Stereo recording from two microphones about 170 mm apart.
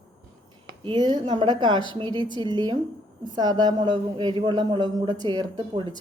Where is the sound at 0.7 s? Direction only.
25° right (ahead or behind).